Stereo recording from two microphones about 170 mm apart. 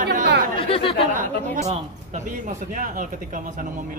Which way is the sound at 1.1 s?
50° right (ahead or behind).